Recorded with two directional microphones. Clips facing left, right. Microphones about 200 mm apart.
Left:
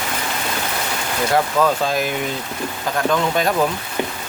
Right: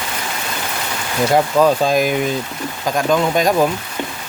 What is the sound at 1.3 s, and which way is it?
Speech, 15° right (ahead or behind).